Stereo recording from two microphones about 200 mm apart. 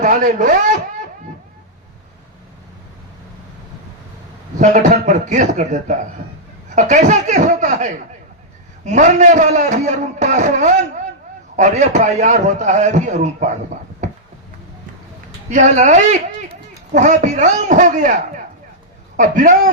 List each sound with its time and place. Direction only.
0.0 s a man's voice: 40° right (ahead or behind)
4.5 s a man's voice: 40° right (ahead or behind)
14.0 s a sound: 35° right (ahead or behind)
15.4 s a man's voice: 35° right (ahead or behind)